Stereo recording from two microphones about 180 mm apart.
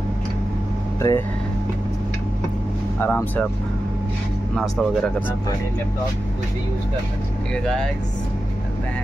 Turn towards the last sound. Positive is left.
turn(degrees=5)  # may be behind; listen again after turning